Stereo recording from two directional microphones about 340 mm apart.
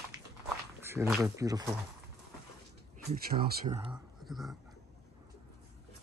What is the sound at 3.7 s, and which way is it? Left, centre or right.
Speech, centre.